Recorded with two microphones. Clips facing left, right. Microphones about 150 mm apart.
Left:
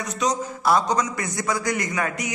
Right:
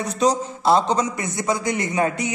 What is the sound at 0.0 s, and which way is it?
Speech, 30° right (ahead or behind).